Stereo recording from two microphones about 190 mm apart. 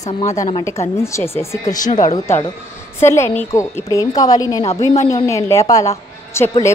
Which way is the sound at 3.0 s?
15° left (ahead or behind).